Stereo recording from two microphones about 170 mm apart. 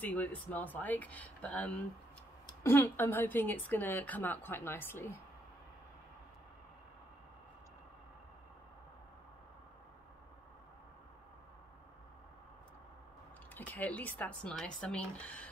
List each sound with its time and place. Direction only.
0.0 s a woman's voice: 10° left (ahead or behind)
13.6 s a woman's voice: 10° left (ahead or behind)